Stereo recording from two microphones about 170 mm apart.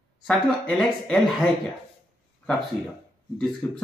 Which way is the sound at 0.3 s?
5° left (ahead or behind).